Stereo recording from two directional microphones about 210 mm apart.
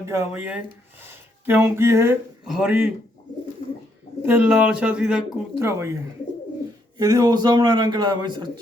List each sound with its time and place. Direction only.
0.0 s speech: 10° right (ahead or behind)
4.3 s a man's voice: 5° right (ahead or behind); by 8.4 s 20° right (ahead or behind)